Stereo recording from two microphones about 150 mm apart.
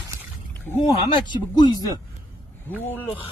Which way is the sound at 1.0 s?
30° left (ahead or behind).